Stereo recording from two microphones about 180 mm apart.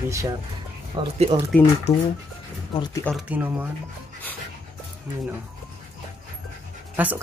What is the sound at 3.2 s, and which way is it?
Speech, 10° right (ahead or behind).